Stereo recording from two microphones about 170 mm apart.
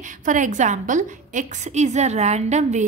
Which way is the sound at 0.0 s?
50° right (ahead or behind).